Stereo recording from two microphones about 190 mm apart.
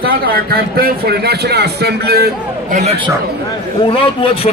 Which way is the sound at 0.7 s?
55° right (ahead or behind).